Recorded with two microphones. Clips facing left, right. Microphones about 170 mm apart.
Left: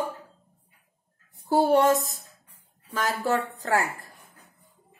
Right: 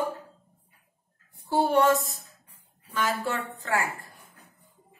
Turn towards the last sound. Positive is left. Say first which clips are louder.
# left 3 dB
turn(degrees=40)  # may be behind; listen again after turning